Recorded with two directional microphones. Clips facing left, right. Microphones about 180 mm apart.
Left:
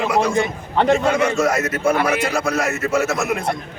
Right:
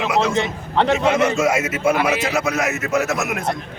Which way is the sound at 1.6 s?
5° right (ahead or behind).